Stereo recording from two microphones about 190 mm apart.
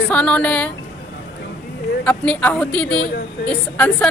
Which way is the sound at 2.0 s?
5° left (ahead or behind).